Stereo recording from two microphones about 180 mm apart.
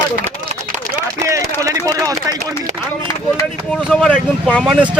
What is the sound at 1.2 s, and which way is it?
A man's voice, 15° right (ahead or behind).